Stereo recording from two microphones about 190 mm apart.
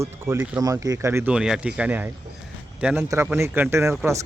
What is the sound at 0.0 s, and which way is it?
Speech, 15° right (ahead or behind).